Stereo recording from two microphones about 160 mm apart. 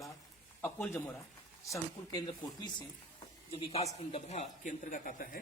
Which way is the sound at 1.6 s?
20° left (ahead or behind).